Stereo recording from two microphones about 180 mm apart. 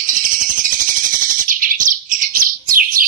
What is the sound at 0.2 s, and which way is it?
Bird, 50° right (ahead or behind).